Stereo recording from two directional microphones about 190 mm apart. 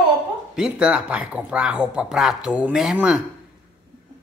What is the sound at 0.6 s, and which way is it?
A man's voice, 5° right (ahead or behind).